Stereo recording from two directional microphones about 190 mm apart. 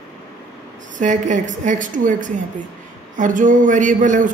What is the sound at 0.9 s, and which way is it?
A woman's voice, 40° right (ahead or behind).